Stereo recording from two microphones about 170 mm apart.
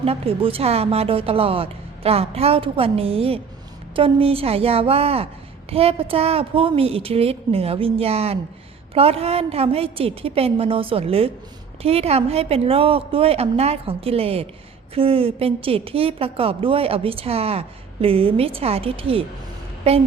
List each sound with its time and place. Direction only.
0.0 s a woman's voice: 35° right (ahead or behind)